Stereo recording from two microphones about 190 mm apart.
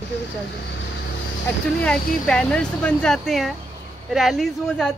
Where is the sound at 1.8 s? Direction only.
5° left (ahead or behind).